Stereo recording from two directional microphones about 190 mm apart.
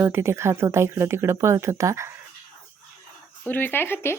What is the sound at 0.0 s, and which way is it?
A woman's voice, 15° right (ahead or behind).